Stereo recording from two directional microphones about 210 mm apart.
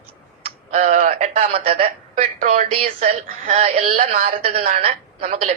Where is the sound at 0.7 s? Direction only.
35° right (ahead or behind).